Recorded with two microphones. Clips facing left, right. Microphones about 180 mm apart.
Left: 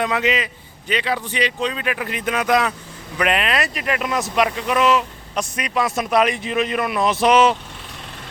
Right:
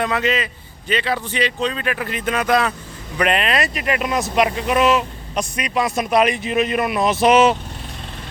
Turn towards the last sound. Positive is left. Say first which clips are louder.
# right 1 dB
turn(degrees=-5)  # may be behind; listen again after turning